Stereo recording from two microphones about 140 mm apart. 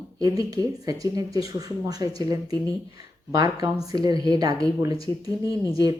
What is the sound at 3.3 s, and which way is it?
Speech, 25° right (ahead or behind).